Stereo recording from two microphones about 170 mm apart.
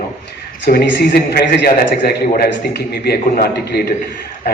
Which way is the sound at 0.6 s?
75° left (ahead or behind).